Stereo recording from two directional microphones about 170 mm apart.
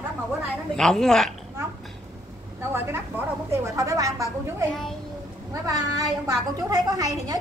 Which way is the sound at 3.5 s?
20° right (ahead or behind).